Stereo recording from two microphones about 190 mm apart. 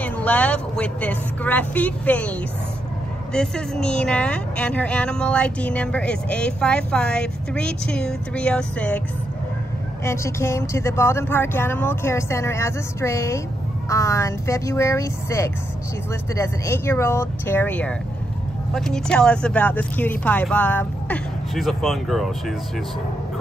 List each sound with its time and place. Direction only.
0.0 s a woman's voice: 10° left (ahead or behind)
3.3 s a woman's voice: 5° left (ahead or behind)
10.0 s a woman's voice: 15° left (ahead or behind)